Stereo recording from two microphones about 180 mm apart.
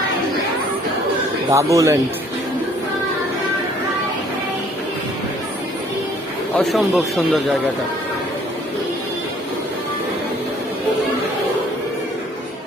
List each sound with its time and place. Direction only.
1.5 s speech: 15° right (ahead or behind)
6.6 s speech: centre (ahead or behind)